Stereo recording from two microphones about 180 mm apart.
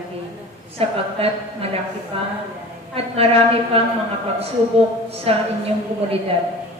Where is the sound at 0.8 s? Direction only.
30° right (ahead or behind).